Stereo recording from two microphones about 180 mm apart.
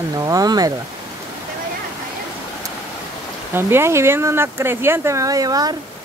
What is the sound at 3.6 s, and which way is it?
Speech, 15° right (ahead or behind).